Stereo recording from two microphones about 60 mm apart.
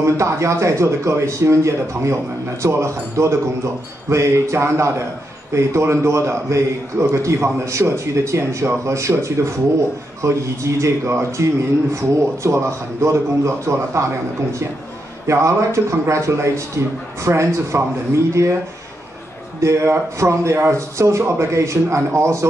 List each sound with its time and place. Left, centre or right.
0.0 s a man's voice: right
19.6 s a man's voice: right